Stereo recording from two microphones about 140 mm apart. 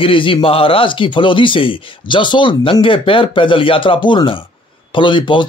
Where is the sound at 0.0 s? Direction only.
40° left (ahead or behind).